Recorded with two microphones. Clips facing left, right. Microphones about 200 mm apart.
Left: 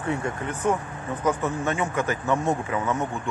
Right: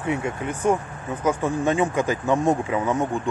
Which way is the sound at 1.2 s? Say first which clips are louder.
Right 3 dB; 10° right (ahead or behind).